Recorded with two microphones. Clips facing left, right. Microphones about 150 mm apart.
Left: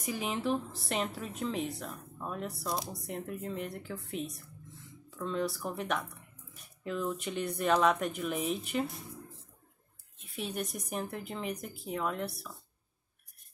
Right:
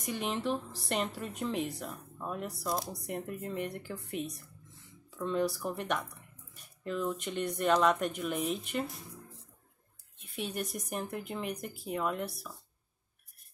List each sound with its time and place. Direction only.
0.0 s a woman's voice: 5° left (ahead or behind)
10.2 s a woman's voice: centre (ahead or behind)